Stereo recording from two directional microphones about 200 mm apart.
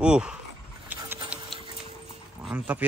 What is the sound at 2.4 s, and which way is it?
Speech, 5° right (ahead or behind).